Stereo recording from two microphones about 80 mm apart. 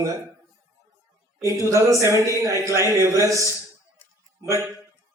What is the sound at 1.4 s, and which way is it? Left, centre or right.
Speech, right.